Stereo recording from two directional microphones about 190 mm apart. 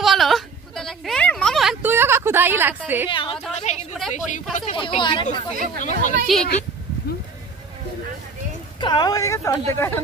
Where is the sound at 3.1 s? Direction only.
25° left (ahead or behind).